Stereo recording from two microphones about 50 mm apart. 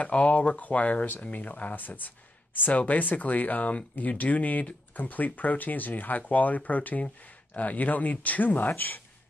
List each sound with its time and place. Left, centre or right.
0.0 s speech: left